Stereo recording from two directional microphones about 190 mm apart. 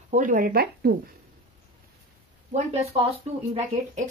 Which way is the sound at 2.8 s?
30° right (ahead or behind).